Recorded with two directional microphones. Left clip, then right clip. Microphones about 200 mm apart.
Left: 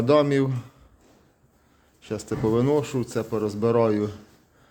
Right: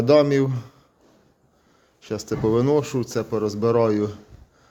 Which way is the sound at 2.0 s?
5° right (ahead or behind).